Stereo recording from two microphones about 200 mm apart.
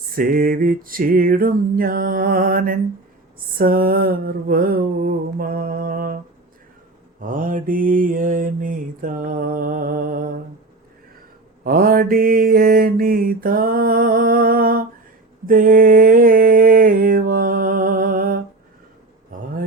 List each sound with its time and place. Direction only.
0.2 s mantra: 45° right (ahead or behind)
7.2 s mantra: 45° right (ahead or behind)
11.6 s mantra: 45° right (ahead or behind)